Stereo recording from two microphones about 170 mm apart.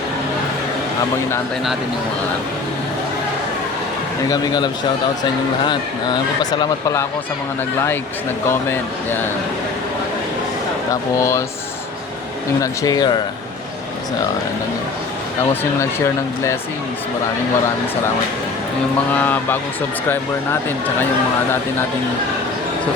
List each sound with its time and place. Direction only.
4.3 s speech: 25° left (ahead or behind)
8.4 s speech: 10° left (ahead or behind)
11.2 s speech: 20° left (ahead or behind)
12.5 s speech: 20° left (ahead or behind)
15.8 s speech: 15° left (ahead or behind)
19.1 s speech: 10° left (ahead or behind)